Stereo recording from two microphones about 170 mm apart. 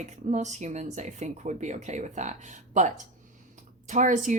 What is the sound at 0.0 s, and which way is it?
A woman's voice, 45° right (ahead or behind).